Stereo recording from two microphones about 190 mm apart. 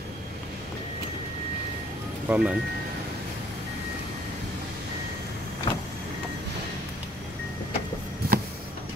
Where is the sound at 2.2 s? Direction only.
5° right (ahead or behind).